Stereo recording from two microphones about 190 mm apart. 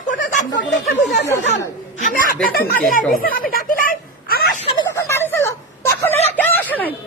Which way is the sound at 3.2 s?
50° left (ahead or behind).